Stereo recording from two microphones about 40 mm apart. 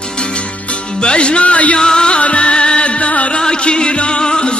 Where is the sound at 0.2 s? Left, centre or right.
Left.